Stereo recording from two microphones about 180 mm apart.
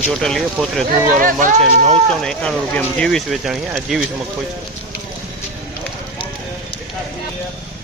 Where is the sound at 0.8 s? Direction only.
50° right (ahead or behind).